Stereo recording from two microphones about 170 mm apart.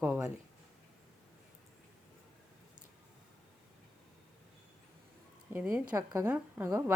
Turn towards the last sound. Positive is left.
turn(degrees=-10)  # may be behind; listen again after turning